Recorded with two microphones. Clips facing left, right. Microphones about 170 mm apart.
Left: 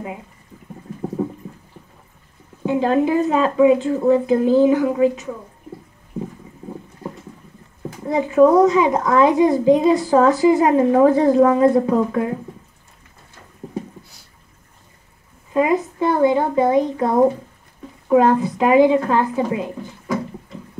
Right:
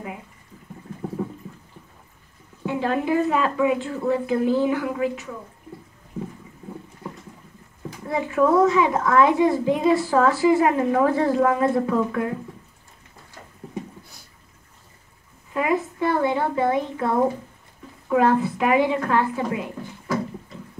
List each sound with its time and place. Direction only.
2.6 s a child's voice: 25° left (ahead or behind)
8.1 s a child's voice: 20° left (ahead or behind)
15.5 s a child's voice: 20° left (ahead or behind)